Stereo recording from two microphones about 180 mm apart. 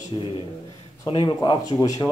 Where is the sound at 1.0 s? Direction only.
25° left (ahead or behind).